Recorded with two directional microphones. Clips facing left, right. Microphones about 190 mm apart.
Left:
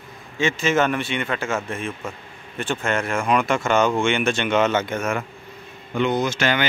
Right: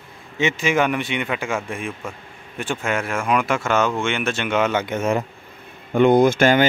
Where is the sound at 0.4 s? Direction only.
15° right (ahead or behind).